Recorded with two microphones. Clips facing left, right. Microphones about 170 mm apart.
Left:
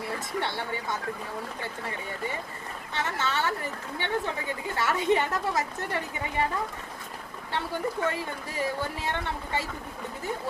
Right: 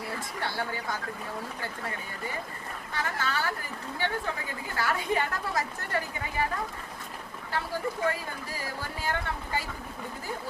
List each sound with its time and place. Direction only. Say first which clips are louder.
0.3 s speech: left 2 dB; 25° left (ahead or behind)
2.9 s speech: left 2 dB; 25° left (ahead or behind)
8.0 s speech: left 1 dB; 25° left (ahead or behind)